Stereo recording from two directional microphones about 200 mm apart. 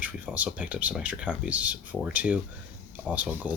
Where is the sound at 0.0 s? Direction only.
5° right (ahead or behind).